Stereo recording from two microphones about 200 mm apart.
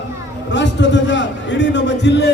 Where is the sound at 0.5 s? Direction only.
65° left (ahead or behind).